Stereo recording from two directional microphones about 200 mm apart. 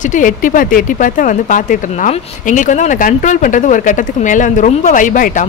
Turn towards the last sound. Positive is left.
turn(degrees=40)  # may be behind; listen again after turning